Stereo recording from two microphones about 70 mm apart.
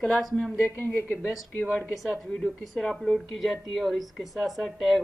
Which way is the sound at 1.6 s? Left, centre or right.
Centre.